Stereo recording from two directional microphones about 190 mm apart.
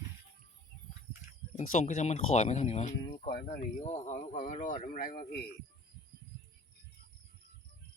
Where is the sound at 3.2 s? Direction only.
50° left (ahead or behind).